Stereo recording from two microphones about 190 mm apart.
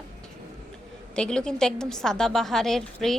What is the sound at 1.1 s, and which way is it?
A woman's voice, 5° left (ahead or behind).